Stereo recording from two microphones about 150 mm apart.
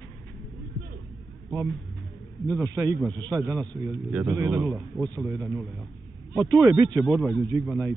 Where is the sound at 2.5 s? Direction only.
25° right (ahead or behind).